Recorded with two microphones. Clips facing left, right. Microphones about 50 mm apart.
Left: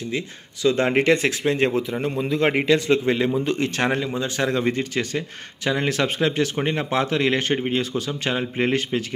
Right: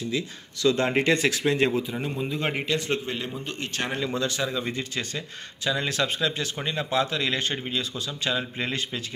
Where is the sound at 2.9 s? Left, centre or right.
Left.